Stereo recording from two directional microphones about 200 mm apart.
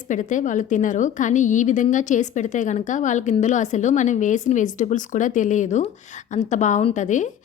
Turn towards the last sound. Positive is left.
turn(degrees=35)  # may be behind; listen again after turning